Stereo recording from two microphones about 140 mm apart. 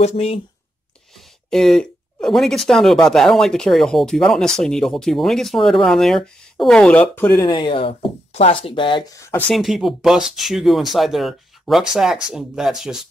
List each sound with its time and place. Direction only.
0.0 s speech: 45° left (ahead or behind)
1.5 s speech: 5° left (ahead or behind)
7.4 s speech: 35° left (ahead or behind)
9.5 s speech: centre (ahead or behind)